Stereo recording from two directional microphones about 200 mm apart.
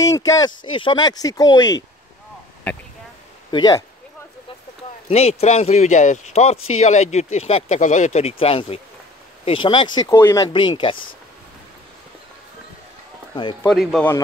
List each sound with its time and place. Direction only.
0.0 s speech: 15° left (ahead or behind)
3.5 s speech: 20° left (ahead or behind)
5.0 s speech: 30° left (ahead or behind)
10.0 s speech: 10° left (ahead or behind)
13.3 s speech: 25° left (ahead or behind)
13.7 s speech: centre (ahead or behind)